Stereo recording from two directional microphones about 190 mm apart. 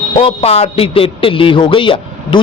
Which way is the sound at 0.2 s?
30° left (ahead or behind).